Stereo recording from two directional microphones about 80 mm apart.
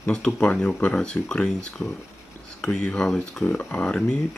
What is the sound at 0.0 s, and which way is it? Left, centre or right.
Speech, centre.